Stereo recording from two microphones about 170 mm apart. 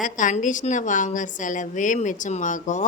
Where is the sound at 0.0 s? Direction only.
50° left (ahead or behind).